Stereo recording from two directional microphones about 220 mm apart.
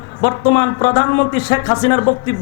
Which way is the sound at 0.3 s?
15° left (ahead or behind).